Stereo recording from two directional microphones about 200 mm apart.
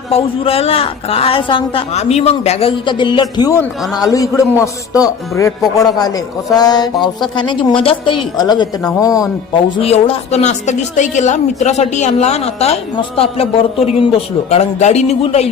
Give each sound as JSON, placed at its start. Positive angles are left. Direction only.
{"t": 0.1, "sound": "a woman's voice", "side_deg": 30}